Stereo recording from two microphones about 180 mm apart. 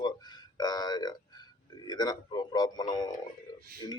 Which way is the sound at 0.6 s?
20° left (ahead or behind).